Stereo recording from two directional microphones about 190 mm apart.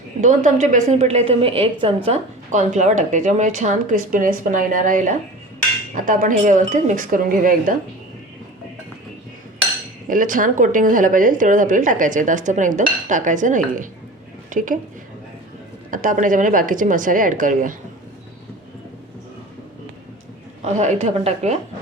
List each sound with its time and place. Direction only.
0.2 s a woman's voice: 40° right (ahead or behind)
10.1 s a woman's voice: 45° right (ahead or behind)
15.9 s a woman's voice: 45° right (ahead or behind)
20.7 s a woman's voice: 35° right (ahead or behind)